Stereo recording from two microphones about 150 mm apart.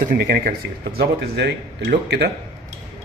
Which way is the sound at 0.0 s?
80° right.